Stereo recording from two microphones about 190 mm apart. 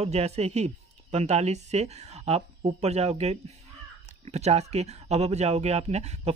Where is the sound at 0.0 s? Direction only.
35° right (ahead or behind).